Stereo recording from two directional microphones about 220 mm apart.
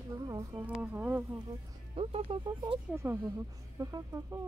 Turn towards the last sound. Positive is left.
turn(degrees=-15)  # may be behind; listen again after turning